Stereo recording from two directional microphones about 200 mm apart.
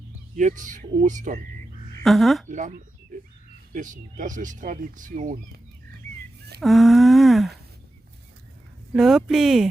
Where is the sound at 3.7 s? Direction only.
40° right (ahead or behind).